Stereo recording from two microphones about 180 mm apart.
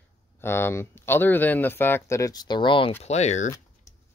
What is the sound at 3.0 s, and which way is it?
Speech, 40° left (ahead or behind).